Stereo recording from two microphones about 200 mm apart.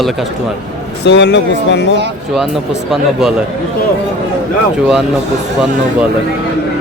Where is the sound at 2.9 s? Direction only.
Centre (ahead or behind).